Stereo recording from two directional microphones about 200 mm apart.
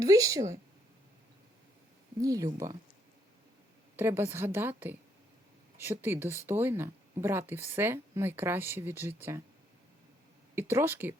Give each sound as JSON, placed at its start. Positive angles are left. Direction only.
{"t": 0.0, "sound": "speech", "side_deg": -15}
{"t": 2.2, "sound": "speech", "side_deg": -15}
{"t": 3.9, "sound": "speech", "side_deg": -10}
{"t": 5.7, "sound": "speech", "side_deg": -10}
{"t": 10.5, "sound": "speech", "side_deg": -10}